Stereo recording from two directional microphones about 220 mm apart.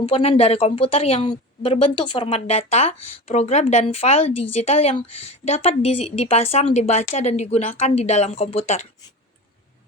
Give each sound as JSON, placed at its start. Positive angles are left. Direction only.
{"t": 0.0, "sound": "a woman's voice", "side_deg": 25}
{"t": 4.4, "sound": "a woman's voice", "side_deg": 90}
{"t": 4.6, "sound": "a woman's voice", "side_deg": 25}